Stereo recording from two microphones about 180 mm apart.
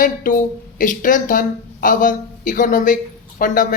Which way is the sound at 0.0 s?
50° left (ahead or behind).